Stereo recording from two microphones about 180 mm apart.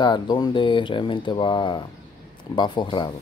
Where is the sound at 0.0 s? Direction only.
25° left (ahead or behind).